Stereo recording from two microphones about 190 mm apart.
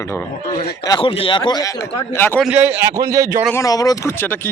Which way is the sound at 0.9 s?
25° left (ahead or behind).